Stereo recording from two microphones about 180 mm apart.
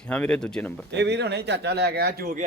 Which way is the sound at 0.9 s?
70° right (ahead or behind).